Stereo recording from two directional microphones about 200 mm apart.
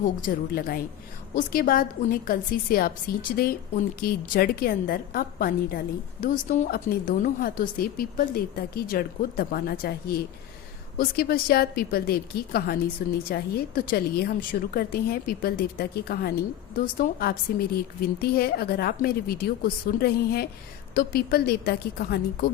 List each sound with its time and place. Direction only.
0.0 s a woman's voice: 45° left (ahead or behind)